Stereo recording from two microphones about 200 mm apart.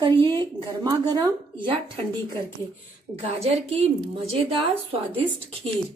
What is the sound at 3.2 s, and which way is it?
A woman's voice, 30° right (ahead or behind).